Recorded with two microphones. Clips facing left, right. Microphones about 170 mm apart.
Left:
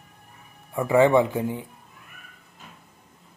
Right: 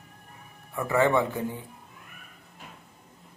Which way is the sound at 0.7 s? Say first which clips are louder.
Left 5 dB; 15° left (ahead or behind).